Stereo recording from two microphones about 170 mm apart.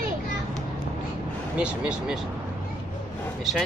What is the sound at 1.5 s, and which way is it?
Speech, 5° right (ahead or behind).